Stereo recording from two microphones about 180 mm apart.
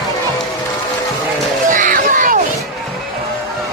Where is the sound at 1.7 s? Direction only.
45° right (ahead or behind).